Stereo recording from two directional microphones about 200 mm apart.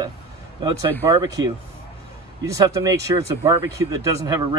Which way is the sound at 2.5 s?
15° right (ahead or behind).